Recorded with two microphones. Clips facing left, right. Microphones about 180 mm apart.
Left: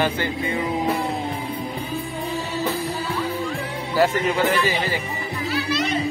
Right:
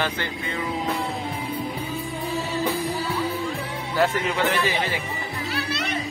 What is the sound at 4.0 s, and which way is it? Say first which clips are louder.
Speech: left 3 dB; 5° left (ahead or behind).